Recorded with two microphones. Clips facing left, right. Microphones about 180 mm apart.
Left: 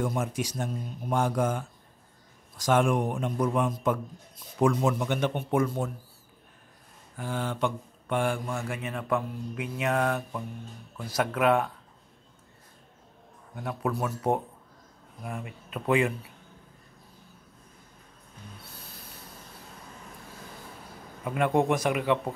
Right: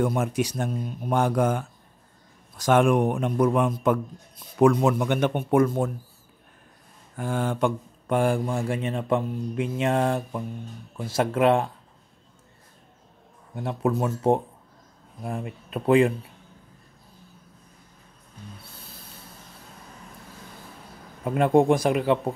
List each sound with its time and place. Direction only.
0.0 s a man's voice: 60° right (ahead or behind)
7.2 s speech: 50° right (ahead or behind); by 11.7 s 25° right (ahead or behind)
13.6 s speech: 25° right (ahead or behind)
21.2 s speech: 30° right (ahead or behind)